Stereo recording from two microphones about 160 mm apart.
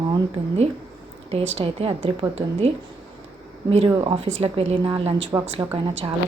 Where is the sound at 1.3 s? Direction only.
40° right (ahead or behind).